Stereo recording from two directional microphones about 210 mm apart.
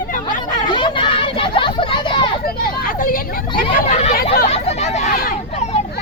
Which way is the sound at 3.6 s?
30° left (ahead or behind).